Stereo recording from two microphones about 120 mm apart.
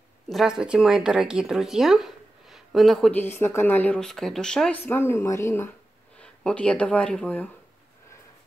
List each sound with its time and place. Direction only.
0.3 s speech: 5° right (ahead or behind)
3.1 s speech: 15° left (ahead or behind)
4.0 s speech: 5° left (ahead or behind)
4.8 s speech: 20° left (ahead or behind)
6.2 s speech: 10° left (ahead or behind)